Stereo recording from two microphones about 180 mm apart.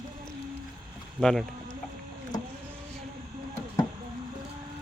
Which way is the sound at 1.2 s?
5° left (ahead or behind).